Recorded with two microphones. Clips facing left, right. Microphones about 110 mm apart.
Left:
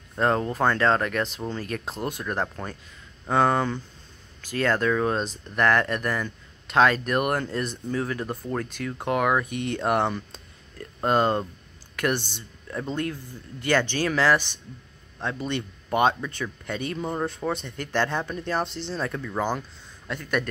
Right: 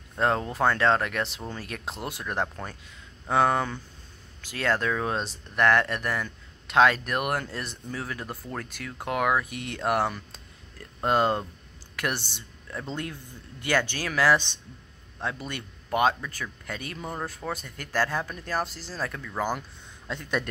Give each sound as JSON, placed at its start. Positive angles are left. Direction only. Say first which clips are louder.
{"t": 0.1, "sound": "speech", "louder": "left 2 dB", "side_deg": 0}
{"t": 3.3, "sound": "speech", "louder": "left 2 dB", "side_deg": -10}
{"t": 11.9, "sound": "a sound", "louder": "left 5 dB", "side_deg": -10}
{"t": 12.9, "sound": "speech", "louder": "left 7 dB", "side_deg": -15}
{"t": 19.1, "sound": "speech", "louder": "left 4 dB", "side_deg": 5}
{"t": 20.2, "sound": "a man's voice", "louder": "left 3 dB", "side_deg": -25}